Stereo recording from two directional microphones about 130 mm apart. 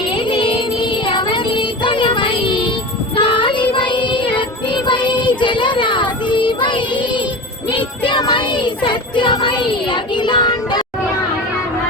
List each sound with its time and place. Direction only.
0.2 s music: 40° left (ahead or behind)
7.8 s child singing: 35° left (ahead or behind)